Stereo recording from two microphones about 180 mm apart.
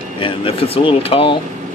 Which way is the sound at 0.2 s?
30° left (ahead or behind).